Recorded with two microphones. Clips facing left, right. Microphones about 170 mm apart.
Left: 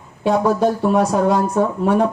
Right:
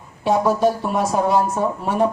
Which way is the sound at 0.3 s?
60° left (ahead or behind).